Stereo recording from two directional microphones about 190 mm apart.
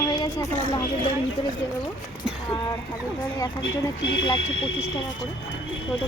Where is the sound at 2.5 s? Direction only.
25° left (ahead or behind).